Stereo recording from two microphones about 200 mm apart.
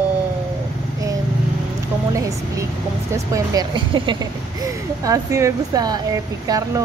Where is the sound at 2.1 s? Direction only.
15° right (ahead or behind).